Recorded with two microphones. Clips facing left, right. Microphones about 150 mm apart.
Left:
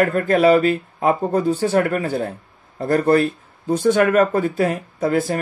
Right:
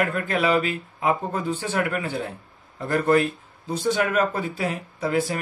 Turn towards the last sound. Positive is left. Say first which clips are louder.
# left 5 dB
turn(degrees=45)  # may be behind; listen again after turning